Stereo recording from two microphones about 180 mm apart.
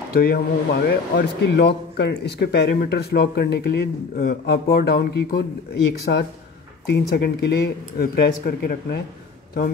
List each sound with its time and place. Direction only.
0.1 s speech: 60° left (ahead or behind)